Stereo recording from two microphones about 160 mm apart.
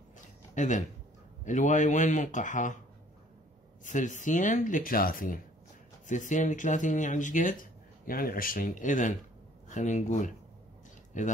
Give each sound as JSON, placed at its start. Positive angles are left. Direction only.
{"t": 0.6, "sound": "speech", "side_deg": 50}
{"t": 3.8, "sound": "speech", "side_deg": 50}
{"t": 6.0, "sound": "speech", "side_deg": 50}
{"t": 8.0, "sound": "speech", "side_deg": 65}